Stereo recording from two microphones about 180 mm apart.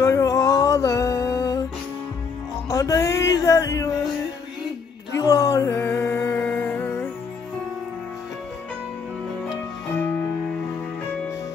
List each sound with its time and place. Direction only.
0.0 s music: 15° left (ahead or behind)
2.7 s music: 20° left (ahead or behind)
5.2 s a sound: 15° left (ahead or behind)